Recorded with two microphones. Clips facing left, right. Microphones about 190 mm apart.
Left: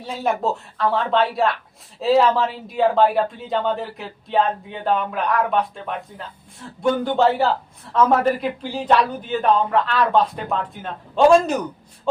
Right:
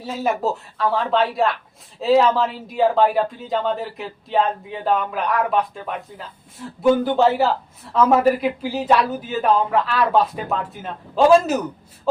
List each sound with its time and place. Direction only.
0.0 s speech: centre (ahead or behind)